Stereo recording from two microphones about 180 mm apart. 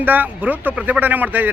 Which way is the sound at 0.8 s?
5° right (ahead or behind).